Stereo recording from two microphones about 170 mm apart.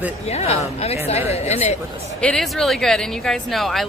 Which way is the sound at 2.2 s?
Centre (ahead or behind).